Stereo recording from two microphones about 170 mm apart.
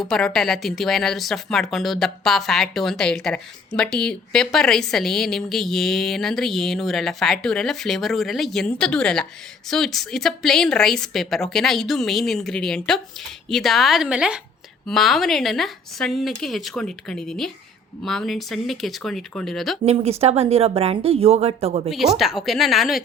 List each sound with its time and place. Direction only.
0.1 s speech: 5° left (ahead or behind)
19.8 s speech: 40° right (ahead or behind)
21.8 s speech: centre (ahead or behind)